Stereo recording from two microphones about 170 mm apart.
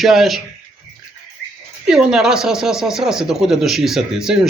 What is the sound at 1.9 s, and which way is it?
Speech, 5° right (ahead or behind).